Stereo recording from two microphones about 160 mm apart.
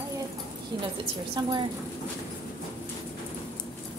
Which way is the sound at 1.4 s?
30° right (ahead or behind).